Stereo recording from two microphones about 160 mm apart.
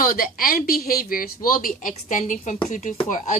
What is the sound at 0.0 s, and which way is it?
Speech, 65° left (ahead or behind).